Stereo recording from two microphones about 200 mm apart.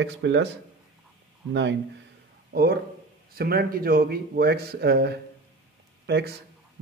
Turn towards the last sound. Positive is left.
turn(degrees=-55)  # may be behind; listen again after turning